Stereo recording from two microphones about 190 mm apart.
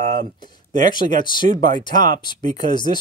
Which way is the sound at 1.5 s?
45° right (ahead or behind).